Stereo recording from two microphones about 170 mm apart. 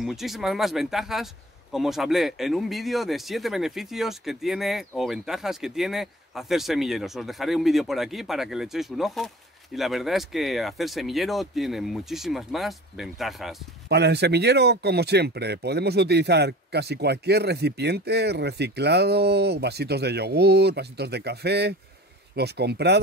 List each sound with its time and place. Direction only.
0.0 s speech: centre (ahead or behind)
13.8 s speech: 75° right (ahead or behind)